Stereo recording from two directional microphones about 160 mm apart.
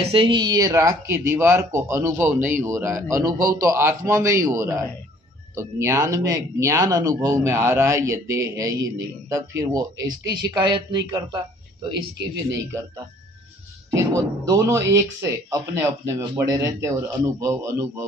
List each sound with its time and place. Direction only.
0.0 s speech: 35° right (ahead or behind)
13.8 s speech: 20° right (ahead or behind)